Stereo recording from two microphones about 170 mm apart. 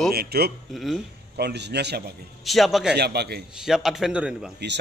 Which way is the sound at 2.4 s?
Centre (ahead or behind).